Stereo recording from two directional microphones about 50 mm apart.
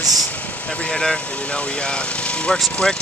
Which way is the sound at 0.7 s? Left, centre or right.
Left.